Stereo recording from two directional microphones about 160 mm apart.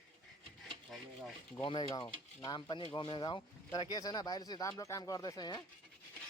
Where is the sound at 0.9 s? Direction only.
Centre (ahead or behind).